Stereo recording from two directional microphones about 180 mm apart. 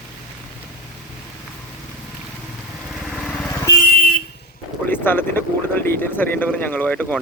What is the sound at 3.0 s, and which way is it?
Lawn mower, centre (ahead or behind).